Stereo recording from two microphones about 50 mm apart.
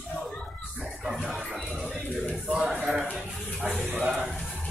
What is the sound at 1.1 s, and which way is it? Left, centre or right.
Music, centre.